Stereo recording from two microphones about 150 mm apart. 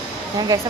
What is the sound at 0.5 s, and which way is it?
Speech, 25° right (ahead or behind).